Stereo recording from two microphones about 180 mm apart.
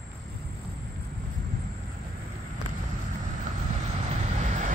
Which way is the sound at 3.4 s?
40° right (ahead or behind).